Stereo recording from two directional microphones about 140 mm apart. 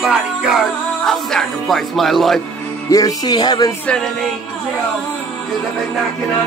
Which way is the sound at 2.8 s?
25° left (ahead or behind).